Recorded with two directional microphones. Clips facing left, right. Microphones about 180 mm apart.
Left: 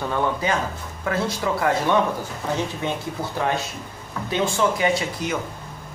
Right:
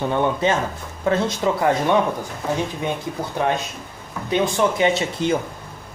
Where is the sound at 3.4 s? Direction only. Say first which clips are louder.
Right 3 dB; 20° right (ahead or behind).